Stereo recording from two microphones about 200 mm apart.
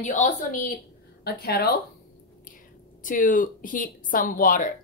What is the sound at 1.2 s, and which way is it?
Speech, 50° left (ahead or behind).